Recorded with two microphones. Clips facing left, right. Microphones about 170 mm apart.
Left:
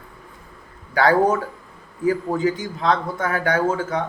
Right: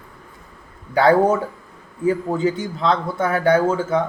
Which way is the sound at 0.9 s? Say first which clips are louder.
Right 2 dB; 30° right (ahead or behind).